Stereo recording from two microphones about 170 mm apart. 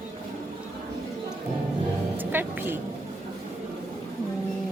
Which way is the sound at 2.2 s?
10° right (ahead or behind).